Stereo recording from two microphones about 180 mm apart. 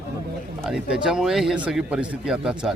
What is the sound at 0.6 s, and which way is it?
Speech, 5° right (ahead or behind).